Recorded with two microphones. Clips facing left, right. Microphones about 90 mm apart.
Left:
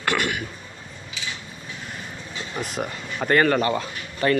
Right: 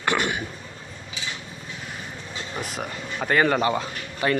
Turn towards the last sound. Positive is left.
turn(degrees=-15)  # may be behind; listen again after turning